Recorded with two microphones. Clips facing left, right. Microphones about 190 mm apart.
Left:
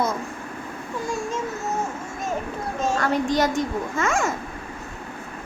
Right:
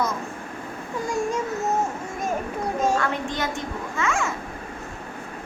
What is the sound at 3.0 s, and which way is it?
A child's voice, 40° left (ahead or behind).